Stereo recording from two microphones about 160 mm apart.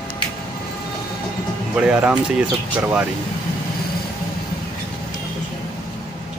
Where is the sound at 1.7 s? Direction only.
5° right (ahead or behind).